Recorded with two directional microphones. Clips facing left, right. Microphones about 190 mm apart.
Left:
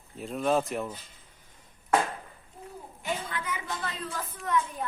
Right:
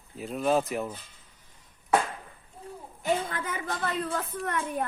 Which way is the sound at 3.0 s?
45° right (ahead or behind).